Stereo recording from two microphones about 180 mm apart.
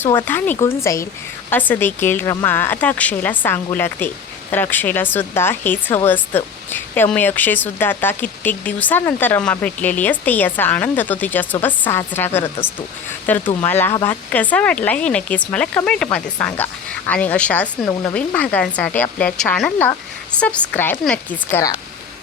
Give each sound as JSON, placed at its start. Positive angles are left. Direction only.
{"t": 0.3, "sound": "speech", "side_deg": 10}